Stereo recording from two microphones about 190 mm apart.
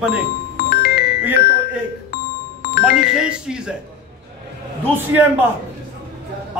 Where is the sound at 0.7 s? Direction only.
55° left (ahead or behind).